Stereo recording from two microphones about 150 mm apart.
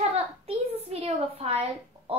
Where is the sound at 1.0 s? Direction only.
45° right (ahead or behind).